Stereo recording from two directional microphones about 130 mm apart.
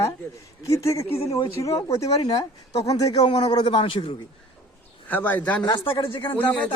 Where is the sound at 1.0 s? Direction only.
50° left (ahead or behind).